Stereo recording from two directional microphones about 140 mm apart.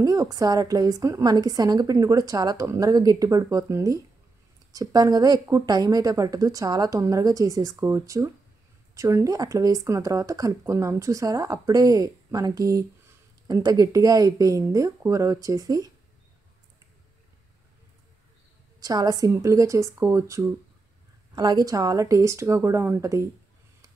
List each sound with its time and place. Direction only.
0.0 s a woman's voice: 25° right (ahead or behind)
18.8 s a woman's voice: 25° right (ahead or behind)